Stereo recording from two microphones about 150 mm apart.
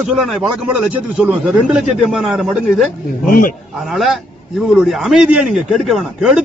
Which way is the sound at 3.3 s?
70° left (ahead or behind).